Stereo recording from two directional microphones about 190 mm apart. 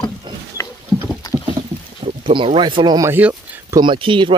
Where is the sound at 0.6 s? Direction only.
15° left (ahead or behind).